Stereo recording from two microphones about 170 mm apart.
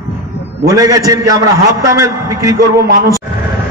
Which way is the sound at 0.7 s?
20° right (ahead or behind).